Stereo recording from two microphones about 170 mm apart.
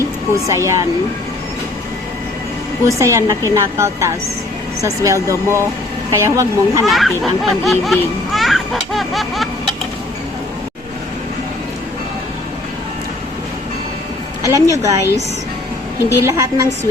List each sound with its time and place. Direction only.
0.4 s a woman's voice: 15° right (ahead or behind)
2.8 s a woman's voice: 15° right (ahead or behind)
6.8 s speech: centre (ahead or behind)
7.6 s children playing: centre (ahead or behind)
14.4 s a woman's voice: 20° right (ahead or behind)
16.0 s a woman's voice: 15° left (ahead or behind)
16.2 s a woman's voice: 20° right (ahead or behind)